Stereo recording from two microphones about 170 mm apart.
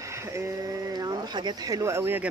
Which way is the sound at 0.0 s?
15° right (ahead or behind).